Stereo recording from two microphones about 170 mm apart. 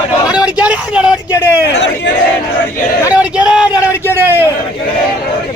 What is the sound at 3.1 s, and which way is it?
Speech, 5° right (ahead or behind).